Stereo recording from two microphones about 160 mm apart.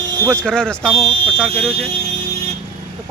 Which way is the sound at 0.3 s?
5° left (ahead or behind).